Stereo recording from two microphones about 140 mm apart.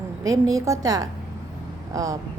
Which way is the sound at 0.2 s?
25° right (ahead or behind).